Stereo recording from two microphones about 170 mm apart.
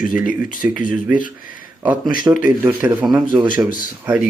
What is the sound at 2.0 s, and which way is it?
Speech, 25° right (ahead or behind).